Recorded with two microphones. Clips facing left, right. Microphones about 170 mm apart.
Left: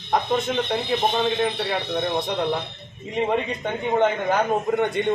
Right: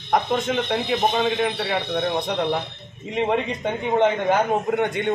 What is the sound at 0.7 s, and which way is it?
Speech, 5° right (ahead or behind).